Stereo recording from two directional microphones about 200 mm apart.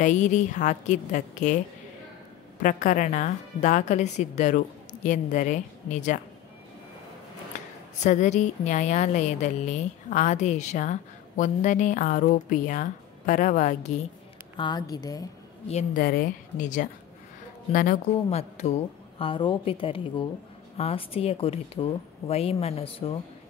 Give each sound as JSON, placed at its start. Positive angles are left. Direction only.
{"t": 0.0, "sound": "a woman's voice", "side_deg": 35}
{"t": 2.6, "sound": "a woman's voice", "side_deg": 40}
{"t": 8.0, "sound": "a woman's voice", "side_deg": 35}
{"t": 14.6, "sound": "a woman's voice", "side_deg": 20}
{"t": 15.7, "sound": "a woman's voice", "side_deg": 45}